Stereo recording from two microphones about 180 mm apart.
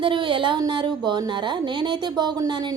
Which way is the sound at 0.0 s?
25° right (ahead or behind).